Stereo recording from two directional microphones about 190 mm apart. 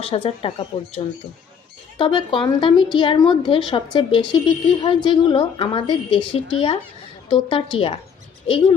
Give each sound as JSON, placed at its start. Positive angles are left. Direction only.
{"t": 0.0, "sound": "a woman's voice", "side_deg": 30}